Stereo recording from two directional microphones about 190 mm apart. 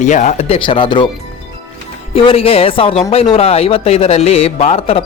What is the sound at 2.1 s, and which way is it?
Speech, 30° left (ahead or behind).